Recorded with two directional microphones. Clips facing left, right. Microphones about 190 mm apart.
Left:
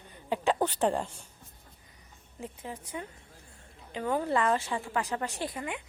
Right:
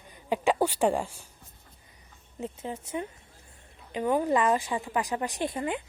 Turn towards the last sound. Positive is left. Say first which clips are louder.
# right 6 dB
turn(degrees=-35)  # may be behind; listen again after turning